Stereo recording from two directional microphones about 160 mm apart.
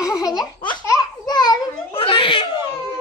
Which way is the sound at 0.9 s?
25° left (ahead or behind).